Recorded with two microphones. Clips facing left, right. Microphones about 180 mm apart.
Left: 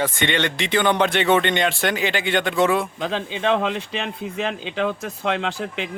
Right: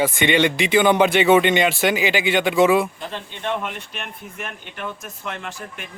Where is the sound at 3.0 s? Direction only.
90° left.